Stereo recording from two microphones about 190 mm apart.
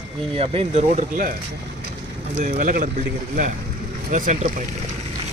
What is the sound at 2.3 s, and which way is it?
Speech, 40° right (ahead or behind).